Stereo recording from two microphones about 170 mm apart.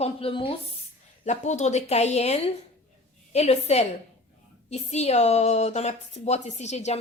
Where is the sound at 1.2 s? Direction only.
45° left (ahead or behind).